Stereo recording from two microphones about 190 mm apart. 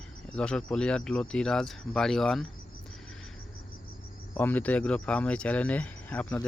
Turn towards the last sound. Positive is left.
turn(degrees=5)  # may be behind; listen again after turning